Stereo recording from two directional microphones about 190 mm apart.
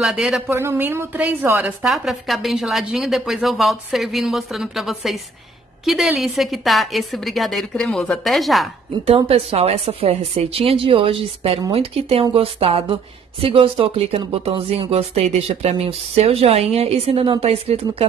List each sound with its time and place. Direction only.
0.0 s a woman's voice: 5° right (ahead or behind)
9.0 s speech: 30° right (ahead or behind)